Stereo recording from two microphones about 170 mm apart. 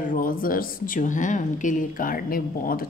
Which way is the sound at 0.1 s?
55° left (ahead or behind).